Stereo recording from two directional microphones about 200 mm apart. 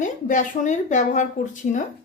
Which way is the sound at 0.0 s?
40° left (ahead or behind).